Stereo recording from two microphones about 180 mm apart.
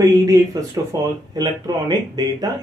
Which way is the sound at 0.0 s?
20° right (ahead or behind).